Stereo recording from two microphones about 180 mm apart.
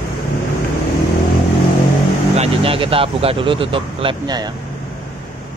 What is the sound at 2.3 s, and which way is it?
Speech, 35° right (ahead or behind).